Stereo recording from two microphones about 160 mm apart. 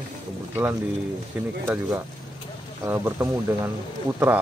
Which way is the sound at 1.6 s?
10° right (ahead or behind).